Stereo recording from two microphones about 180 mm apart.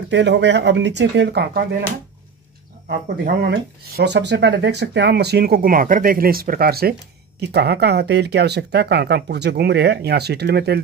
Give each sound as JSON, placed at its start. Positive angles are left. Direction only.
{"t": 0.1, "sound": "speech", "side_deg": -75}
{"t": 2.9, "sound": "speech", "side_deg": -70}